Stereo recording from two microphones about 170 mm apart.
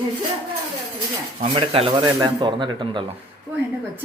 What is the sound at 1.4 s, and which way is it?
Speech, 35° right (ahead or behind).